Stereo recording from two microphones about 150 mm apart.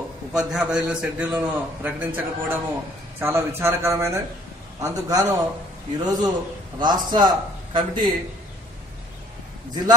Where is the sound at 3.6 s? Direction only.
15° right (ahead or behind).